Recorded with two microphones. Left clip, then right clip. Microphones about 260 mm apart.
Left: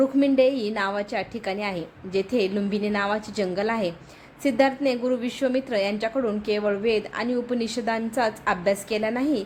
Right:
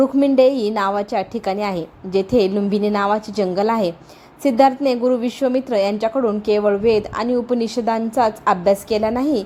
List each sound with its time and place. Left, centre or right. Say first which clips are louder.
0.2 s a woman's voice: right 7 dB; centre